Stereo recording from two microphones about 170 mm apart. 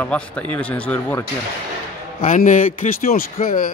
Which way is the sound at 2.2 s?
50° left (ahead or behind).